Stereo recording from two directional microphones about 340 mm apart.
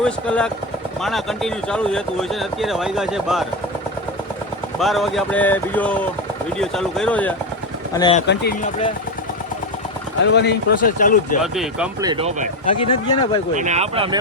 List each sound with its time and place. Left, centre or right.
0.0 s speech: centre
4.8 s speech: centre
8.3 s speech: left
10.2 s speech: left
11.5 s speech: centre
12.8 s speech: centre
13.6 s speech: centre